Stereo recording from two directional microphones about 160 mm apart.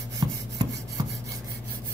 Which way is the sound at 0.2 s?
30° right (ahead or behind).